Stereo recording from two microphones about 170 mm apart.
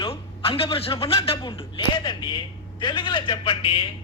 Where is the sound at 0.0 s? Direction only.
35° left (ahead or behind).